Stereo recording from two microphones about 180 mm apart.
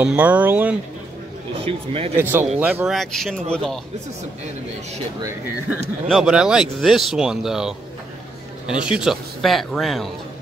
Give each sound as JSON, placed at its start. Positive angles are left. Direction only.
{"t": 0.0, "sound": "speech", "side_deg": -10}
{"t": 1.6, "sound": "speech", "side_deg": -30}
{"t": 2.1, "sound": "speech", "side_deg": -10}
{"t": 6.0, "sound": "speech", "side_deg": 0}